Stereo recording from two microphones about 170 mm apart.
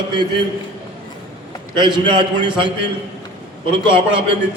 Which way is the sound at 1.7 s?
25° right (ahead or behind).